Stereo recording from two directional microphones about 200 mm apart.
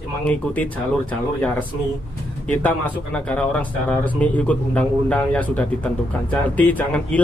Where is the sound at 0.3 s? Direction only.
5° left (ahead or behind).